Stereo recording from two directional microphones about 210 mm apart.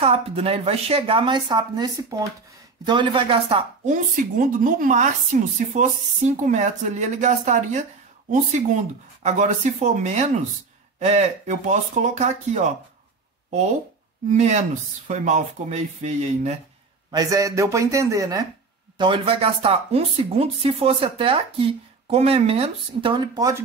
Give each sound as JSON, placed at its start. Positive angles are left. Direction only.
{"t": 0.0, "sound": "speech", "side_deg": -25}
{"t": 9.9, "sound": "speech", "side_deg": -35}
{"t": 14.3, "sound": "speech", "side_deg": -35}
{"t": 17.1, "sound": "speech", "side_deg": -15}